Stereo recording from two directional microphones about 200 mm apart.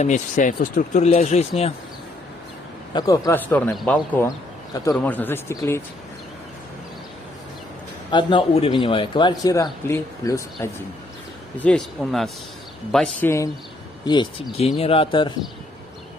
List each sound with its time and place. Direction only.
0.0 s speech: 40° left (ahead or behind)
2.9 s a man's voice: 20° left (ahead or behind)
8.1 s a man's voice: 25° left (ahead or behind)
11.6 s a man's voice: centre (ahead or behind)
14.0 s a man's voice: 20° left (ahead or behind)